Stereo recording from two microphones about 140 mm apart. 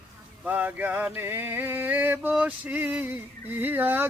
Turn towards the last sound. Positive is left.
turn(degrees=-15)  # may be behind; listen again after turning